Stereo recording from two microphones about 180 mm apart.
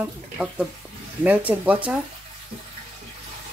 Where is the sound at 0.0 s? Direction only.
5° right (ahead or behind).